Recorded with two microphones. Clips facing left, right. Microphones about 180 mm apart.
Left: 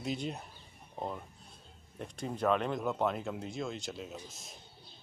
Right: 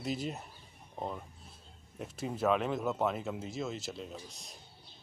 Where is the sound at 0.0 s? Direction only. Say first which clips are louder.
Even; centre (ahead or behind).